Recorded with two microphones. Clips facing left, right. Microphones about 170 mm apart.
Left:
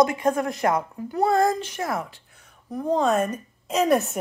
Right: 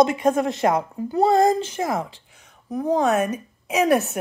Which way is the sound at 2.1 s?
90° right.